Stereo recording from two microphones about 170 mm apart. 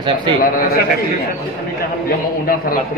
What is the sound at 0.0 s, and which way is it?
Speech, 30° right (ahead or behind).